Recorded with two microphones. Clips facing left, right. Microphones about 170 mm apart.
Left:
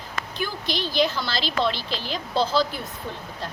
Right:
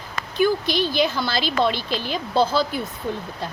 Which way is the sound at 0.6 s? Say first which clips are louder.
Right 3 dB; 55° right (ahead or behind).